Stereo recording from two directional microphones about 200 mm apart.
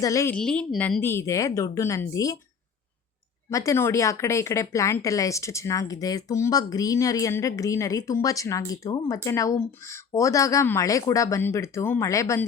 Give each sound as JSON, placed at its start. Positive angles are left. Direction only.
{"t": 0.0, "sound": "a woman's voice", "side_deg": 15}
{"t": 0.3, "sound": "a woman's voice", "side_deg": 5}
{"t": 3.5, "sound": "a woman's voice", "side_deg": 15}